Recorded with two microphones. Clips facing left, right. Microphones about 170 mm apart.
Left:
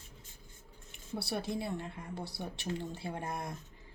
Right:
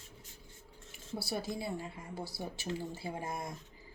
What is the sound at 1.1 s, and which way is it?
Speech, centre (ahead or behind).